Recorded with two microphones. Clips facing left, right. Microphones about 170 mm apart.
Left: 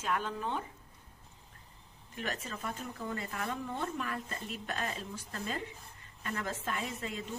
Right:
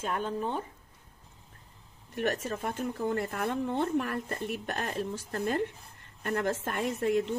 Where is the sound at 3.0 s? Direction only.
60° right (ahead or behind).